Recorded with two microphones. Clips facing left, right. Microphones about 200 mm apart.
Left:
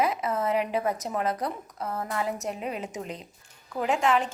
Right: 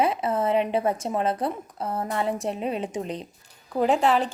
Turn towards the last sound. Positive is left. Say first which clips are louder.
# right 4 dB
turn(degrees=-35)  # may be behind; listen again after turning